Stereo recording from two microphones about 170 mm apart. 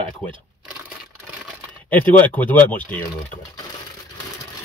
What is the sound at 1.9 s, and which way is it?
Speech, 10° left (ahead or behind).